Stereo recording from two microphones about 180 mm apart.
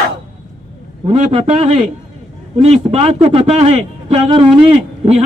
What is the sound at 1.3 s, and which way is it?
A man's voice, 35° right (ahead or behind).